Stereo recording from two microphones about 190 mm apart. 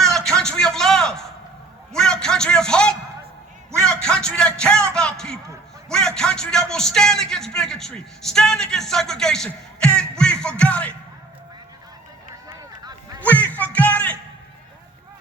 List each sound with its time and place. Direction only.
0.1 s a sound: centre (ahead or behind)
1.9 s a man's voice: 5° left (ahead or behind)
12.5 s run: 15° right (ahead or behind)
13.2 s music: 10° left (ahead or behind)